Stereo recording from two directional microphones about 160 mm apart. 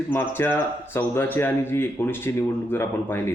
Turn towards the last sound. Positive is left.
turn(degrees=15)  # may be behind; listen again after turning